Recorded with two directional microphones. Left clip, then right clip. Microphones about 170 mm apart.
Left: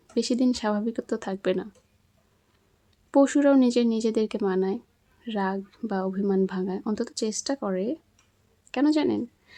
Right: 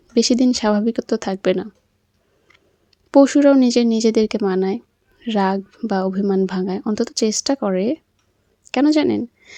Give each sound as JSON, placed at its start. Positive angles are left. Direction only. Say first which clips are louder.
{"t": 0.1, "sound": "speech", "louder": "right 9 dB", "side_deg": -40}
{"t": 2.9, "sound": "speech", "louder": "right 8 dB", "side_deg": -35}